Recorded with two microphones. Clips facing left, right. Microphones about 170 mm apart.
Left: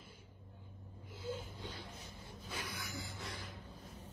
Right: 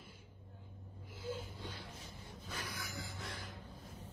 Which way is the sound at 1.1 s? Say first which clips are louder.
Even; 20° left (ahead or behind).